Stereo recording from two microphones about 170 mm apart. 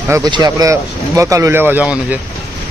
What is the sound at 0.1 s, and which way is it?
Speech, 20° right (ahead or behind).